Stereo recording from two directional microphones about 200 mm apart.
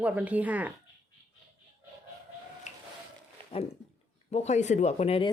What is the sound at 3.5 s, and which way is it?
Speech, 25° left (ahead or behind).